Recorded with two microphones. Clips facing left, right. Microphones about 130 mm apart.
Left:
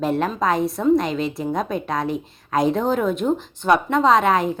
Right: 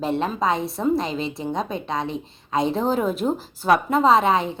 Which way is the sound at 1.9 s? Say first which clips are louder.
Left 2 dB; 25° right (ahead or behind).